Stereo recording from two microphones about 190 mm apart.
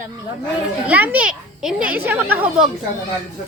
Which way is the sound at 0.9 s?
10° right (ahead or behind).